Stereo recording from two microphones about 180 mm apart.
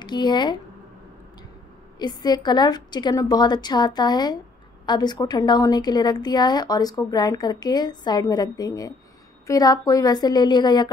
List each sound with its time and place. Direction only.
0.0 s a woman's voice: 25° left (ahead or behind)
2.0 s a woman's voice: 25° left (ahead or behind)